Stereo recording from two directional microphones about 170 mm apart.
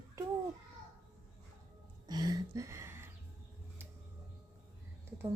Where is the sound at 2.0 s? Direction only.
25° right (ahead or behind).